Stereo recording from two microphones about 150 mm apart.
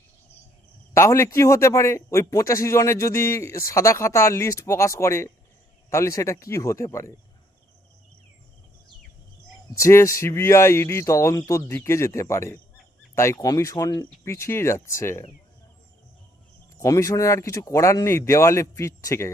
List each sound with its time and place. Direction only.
0.9 s a man's voice: 20° left (ahead or behind)
9.7 s a man's voice: 20° left (ahead or behind)
16.8 s a man's voice: 25° left (ahead or behind)